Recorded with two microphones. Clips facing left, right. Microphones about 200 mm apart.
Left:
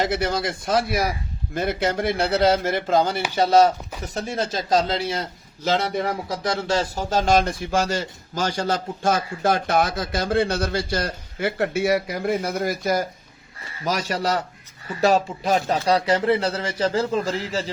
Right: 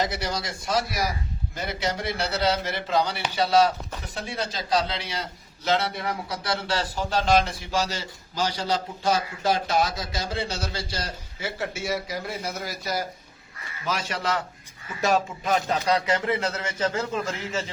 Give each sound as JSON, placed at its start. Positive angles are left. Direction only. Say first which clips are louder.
{"t": 0.0, "sound": "a man's voice", "louder": "left 5 dB", "side_deg": 55}